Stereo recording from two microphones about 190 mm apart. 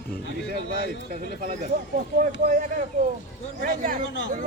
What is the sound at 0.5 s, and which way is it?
Speech, 50° right (ahead or behind).